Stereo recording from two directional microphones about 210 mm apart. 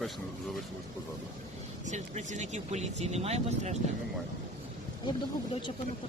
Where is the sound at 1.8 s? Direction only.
35° right (ahead or behind).